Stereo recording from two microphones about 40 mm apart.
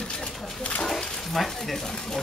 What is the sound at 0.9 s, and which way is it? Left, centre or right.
Stir, centre.